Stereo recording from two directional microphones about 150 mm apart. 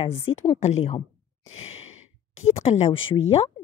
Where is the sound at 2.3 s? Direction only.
50° left (ahead or behind).